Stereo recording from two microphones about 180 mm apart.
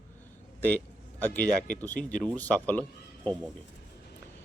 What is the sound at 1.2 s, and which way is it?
Speech, 10° left (ahead or behind).